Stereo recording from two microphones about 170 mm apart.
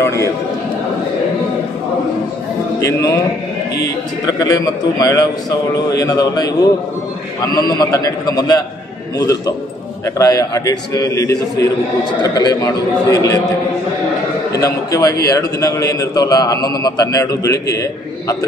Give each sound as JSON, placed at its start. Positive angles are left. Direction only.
{"t": 0.0, "sound": "a man's voice", "side_deg": 15}
{"t": 2.8, "sound": "a man's voice", "side_deg": 15}
{"t": 4.4, "sound": "a man's voice", "side_deg": 20}
{"t": 14.5, "sound": "a man's voice", "side_deg": 20}